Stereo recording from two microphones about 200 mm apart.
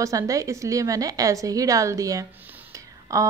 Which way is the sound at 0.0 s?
15° right (ahead or behind).